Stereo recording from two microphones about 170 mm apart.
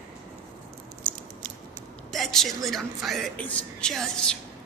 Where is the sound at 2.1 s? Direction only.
Centre (ahead or behind).